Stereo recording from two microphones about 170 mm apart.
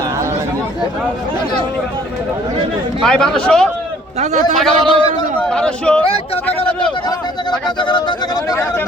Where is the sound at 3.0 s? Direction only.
5° left (ahead or behind).